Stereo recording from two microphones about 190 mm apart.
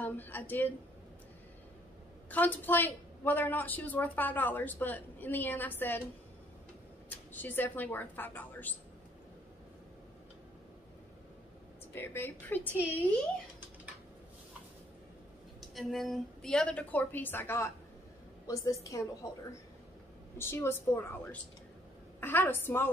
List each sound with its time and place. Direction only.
0.0 s a woman's voice: 10° left (ahead or behind)
2.2 s a woman's voice: 10° left (ahead or behind)
7.3 s a woman's voice: 10° left (ahead or behind)
11.9 s a woman's voice: 10° left (ahead or behind)
15.7 s a woman's voice: centre (ahead or behind); by 19.0 s 15° left (ahead or behind)
20.3 s a woman's voice: 15° left (ahead or behind)